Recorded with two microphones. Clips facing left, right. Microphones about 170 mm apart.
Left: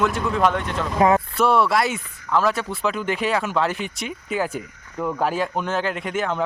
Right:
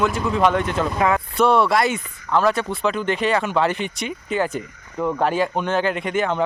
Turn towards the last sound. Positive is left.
turn(degrees=0)  # may be behind; listen again after turning